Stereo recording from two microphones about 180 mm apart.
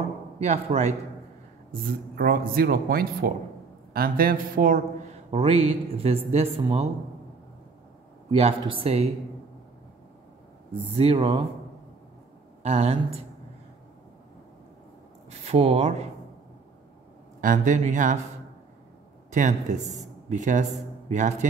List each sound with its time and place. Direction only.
0.4 s speech: 35° right (ahead or behind)
1.7 s a man's voice: 55° right (ahead or behind)
5.3 s speech: 30° right (ahead or behind)
8.3 s speech: 35° right (ahead or behind)
11.0 s speech: 30° right (ahead or behind)
12.6 s speech: 35° right (ahead or behind)
15.4 s speech: 35° right (ahead or behind)
17.4 s speech: 45° right (ahead or behind)
19.3 s speech: 40° right (ahead or behind)